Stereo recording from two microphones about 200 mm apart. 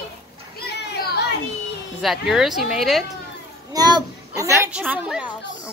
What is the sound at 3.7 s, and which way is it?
Speech, 20° right (ahead or behind).